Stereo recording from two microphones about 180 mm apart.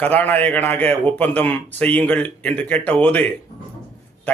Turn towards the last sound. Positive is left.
turn(degrees=10)  # may be behind; listen again after turning